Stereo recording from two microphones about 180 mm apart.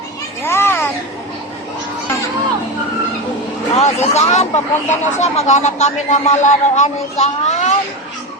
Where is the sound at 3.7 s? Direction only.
35° left (ahead or behind).